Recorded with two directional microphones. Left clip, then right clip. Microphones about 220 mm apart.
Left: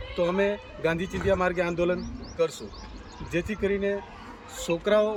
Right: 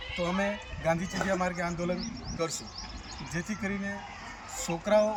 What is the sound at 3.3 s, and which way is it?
Speech, 25° left (ahead or behind).